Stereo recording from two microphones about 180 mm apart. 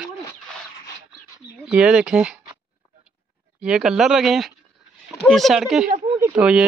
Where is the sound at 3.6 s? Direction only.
5° right (ahead or behind).